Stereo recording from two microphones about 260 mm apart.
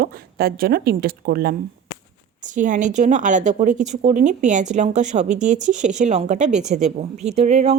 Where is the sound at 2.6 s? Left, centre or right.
Right.